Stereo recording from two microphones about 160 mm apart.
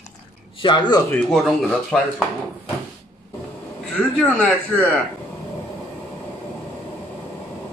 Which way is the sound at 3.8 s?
5° left (ahead or behind).